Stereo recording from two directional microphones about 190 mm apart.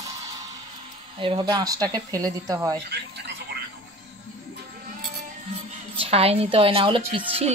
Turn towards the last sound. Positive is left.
turn(degrees=-25)  # may be behind; listen again after turning